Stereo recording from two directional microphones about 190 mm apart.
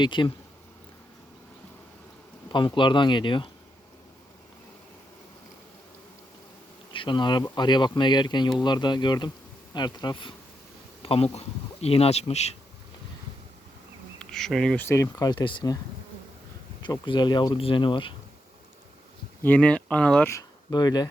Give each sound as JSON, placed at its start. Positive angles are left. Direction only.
{"t": 0.0, "sound": "speech", "side_deg": 25}
{"t": 2.5, "sound": "speech", "side_deg": 25}
{"t": 6.9, "sound": "bee", "side_deg": 25}
{"t": 7.5, "sound": "speech", "side_deg": 25}
{"t": 14.2, "sound": "speech", "side_deg": 5}
{"t": 14.8, "sound": "speech", "side_deg": 15}
{"t": 16.8, "sound": "speech", "side_deg": 25}
{"t": 19.4, "sound": "speech", "side_deg": 10}